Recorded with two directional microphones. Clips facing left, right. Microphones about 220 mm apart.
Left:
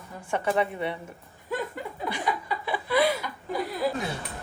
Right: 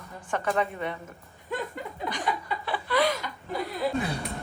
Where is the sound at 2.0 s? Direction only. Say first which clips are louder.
Left 1 dB; 5° left (ahead or behind).